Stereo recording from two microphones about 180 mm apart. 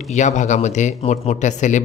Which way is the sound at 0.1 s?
40° left (ahead or behind).